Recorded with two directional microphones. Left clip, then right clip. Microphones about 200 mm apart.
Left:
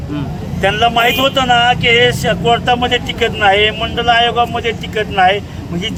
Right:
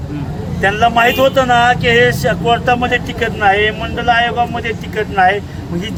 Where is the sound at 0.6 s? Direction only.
5° left (ahead or behind).